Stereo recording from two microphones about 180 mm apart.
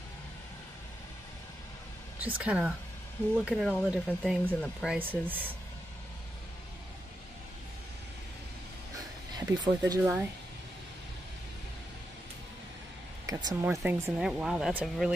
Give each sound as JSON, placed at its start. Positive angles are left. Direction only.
{"t": 2.1, "sound": "speech", "side_deg": -10}
{"t": 9.5, "sound": "speech", "side_deg": -20}
{"t": 13.3, "sound": "speech", "side_deg": -20}
{"t": 13.7, "sound": "speech", "side_deg": -10}